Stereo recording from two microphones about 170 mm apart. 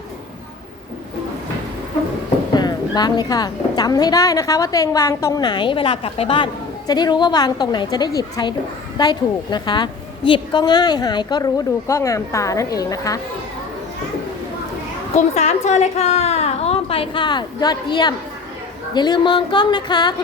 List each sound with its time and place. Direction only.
2.6 s speech: 25° left (ahead or behind)
15.1 s a woman's voice: 40° left (ahead or behind); by 20.1 s 25° left (ahead or behind)